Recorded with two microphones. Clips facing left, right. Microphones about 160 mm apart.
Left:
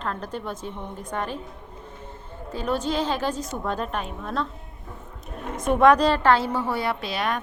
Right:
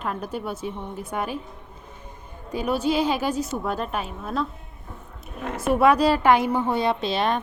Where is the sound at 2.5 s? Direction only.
10° right (ahead or behind).